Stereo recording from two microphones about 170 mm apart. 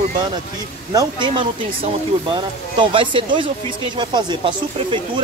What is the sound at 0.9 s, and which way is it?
Speech, 30° right (ahead or behind).